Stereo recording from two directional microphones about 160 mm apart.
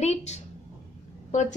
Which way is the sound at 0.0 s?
45° left (ahead or behind).